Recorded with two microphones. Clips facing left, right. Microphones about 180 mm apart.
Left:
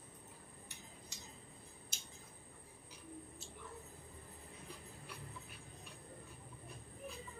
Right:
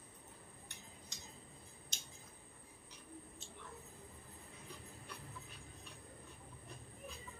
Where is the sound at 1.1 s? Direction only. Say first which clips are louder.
Left 1 dB; 10° left (ahead or behind).